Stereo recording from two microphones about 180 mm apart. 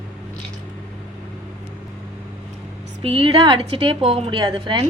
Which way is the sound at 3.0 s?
30° right (ahead or behind).